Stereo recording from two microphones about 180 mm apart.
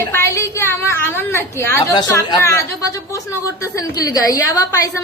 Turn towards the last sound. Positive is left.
turn(degrees=20)  # may be behind; listen again after turning